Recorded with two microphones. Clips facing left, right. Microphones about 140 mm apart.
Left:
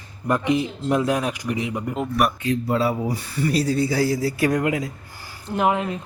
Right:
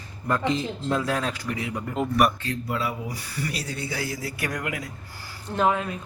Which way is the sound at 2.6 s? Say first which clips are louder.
Left 7 dB; 35° left (ahead or behind).